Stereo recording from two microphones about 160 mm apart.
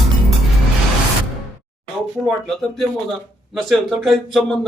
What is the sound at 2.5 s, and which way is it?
A man's voice, centre (ahead or behind).